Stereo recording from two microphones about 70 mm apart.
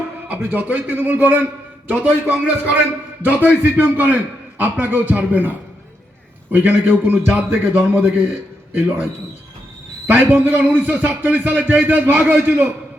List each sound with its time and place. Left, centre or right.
0.3 s a man's voice: right
6.5 s a man's voice: right
10.1 s a man's voice: right